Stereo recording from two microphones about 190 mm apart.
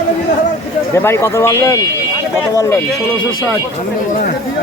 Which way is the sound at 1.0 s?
15° left (ahead or behind).